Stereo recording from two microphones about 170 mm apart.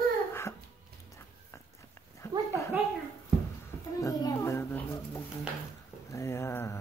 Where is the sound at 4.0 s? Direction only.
20° left (ahead or behind).